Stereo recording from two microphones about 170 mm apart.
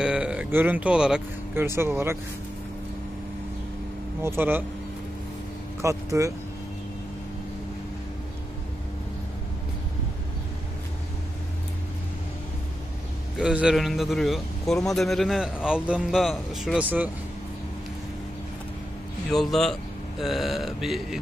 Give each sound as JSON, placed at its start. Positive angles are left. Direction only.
{"t": 0.0, "sound": "speech", "side_deg": -5}
{"t": 4.2, "sound": "speech", "side_deg": -15}
{"t": 5.8, "sound": "speech", "side_deg": -20}
{"t": 13.4, "sound": "a man's voice", "side_deg": -5}
{"t": 19.3, "sound": "a man's voice", "side_deg": 0}